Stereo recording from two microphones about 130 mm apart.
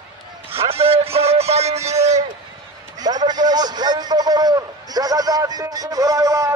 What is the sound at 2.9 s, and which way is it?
A man's voice, 30° right (ahead or behind).